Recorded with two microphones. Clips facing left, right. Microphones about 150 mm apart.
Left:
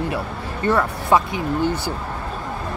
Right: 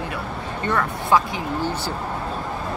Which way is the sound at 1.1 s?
20° left (ahead or behind).